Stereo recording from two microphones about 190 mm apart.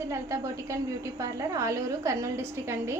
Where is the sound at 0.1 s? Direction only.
15° right (ahead or behind).